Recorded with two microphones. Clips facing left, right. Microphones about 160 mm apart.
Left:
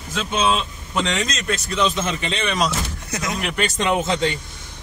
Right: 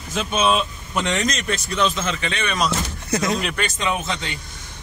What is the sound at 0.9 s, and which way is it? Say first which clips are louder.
A man's voice: right 1 dB; centre (ahead or behind).